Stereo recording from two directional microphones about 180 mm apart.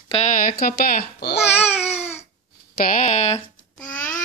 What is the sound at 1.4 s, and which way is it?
Babbling, 35° left (ahead or behind).